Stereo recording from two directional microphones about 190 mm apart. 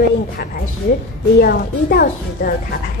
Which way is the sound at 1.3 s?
55° left (ahead or behind).